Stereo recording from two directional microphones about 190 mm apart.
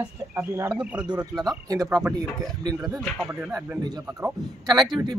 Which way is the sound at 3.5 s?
15° right (ahead or behind).